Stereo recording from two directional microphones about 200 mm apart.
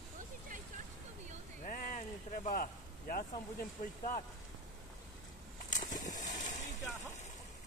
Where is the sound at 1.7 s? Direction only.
40° left (ahead or behind).